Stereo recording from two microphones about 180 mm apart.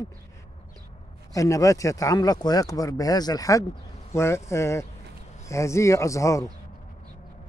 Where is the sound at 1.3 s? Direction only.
20° left (ahead or behind).